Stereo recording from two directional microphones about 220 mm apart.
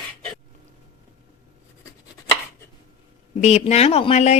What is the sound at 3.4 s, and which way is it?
Speech, 30° left (ahead or behind).